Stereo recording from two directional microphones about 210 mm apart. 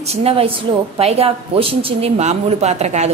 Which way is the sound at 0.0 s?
30° right (ahead or behind).